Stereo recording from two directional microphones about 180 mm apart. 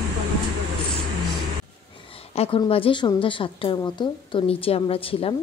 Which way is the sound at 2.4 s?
30° left (ahead or behind).